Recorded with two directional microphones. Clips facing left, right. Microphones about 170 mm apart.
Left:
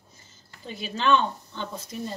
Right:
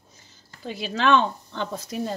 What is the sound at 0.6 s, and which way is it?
Speech, 85° right.